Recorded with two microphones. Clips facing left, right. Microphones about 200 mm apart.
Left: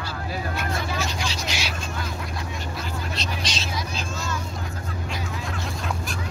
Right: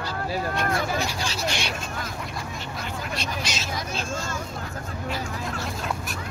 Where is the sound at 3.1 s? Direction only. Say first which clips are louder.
Even; 10° right (ahead or behind).